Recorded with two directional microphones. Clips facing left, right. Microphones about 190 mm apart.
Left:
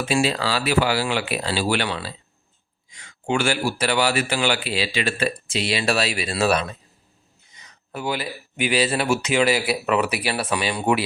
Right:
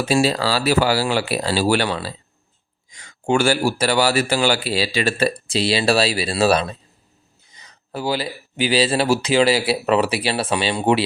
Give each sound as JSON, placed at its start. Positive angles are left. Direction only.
{"t": 0.0, "sound": "speech", "side_deg": -40}